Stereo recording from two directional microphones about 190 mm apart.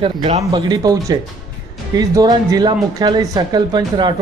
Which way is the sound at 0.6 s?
20° right (ahead or behind).